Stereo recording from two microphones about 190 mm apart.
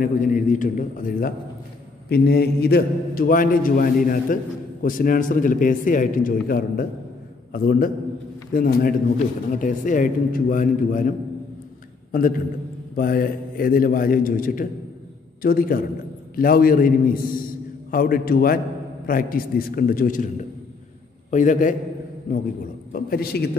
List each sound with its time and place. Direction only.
0.0 s a man's voice: 45° left (ahead or behind)
2.0 s a man's voice: 55° left (ahead or behind)